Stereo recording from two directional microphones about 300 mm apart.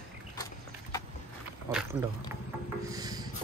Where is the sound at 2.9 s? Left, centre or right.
Centre.